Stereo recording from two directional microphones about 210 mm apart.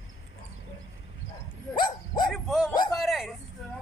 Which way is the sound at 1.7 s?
20° left (ahead or behind).